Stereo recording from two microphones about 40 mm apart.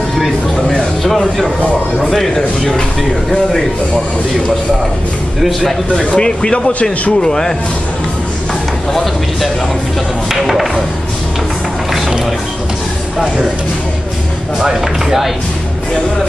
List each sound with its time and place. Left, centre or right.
0.7 s a sound: centre
2.0 s speech: centre
5.4 s speech: centre
6.1 s speech: centre
8.9 s speech: centre
14.6 s speech: centre